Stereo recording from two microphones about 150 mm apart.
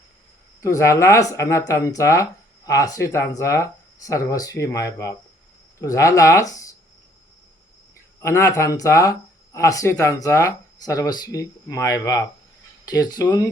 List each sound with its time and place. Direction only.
0.6 s speech: 20° left (ahead or behind)
8.2 s speech: 20° left (ahead or behind)